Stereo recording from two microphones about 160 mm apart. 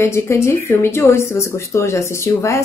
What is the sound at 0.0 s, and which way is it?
Speech, 15° left (ahead or behind).